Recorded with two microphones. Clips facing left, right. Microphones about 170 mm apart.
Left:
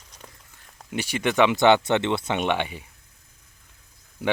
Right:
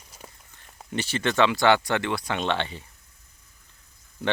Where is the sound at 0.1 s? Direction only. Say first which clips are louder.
Right 1 dB; 5° right (ahead or behind).